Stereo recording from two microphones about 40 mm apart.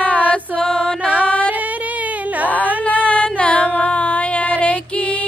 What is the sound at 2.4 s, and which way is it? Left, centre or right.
Music, left.